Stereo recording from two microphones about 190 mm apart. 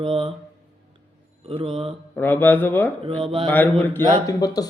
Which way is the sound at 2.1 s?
10° left (ahead or behind).